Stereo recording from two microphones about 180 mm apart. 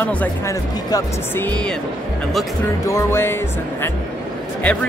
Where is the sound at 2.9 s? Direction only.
15° left (ahead or behind).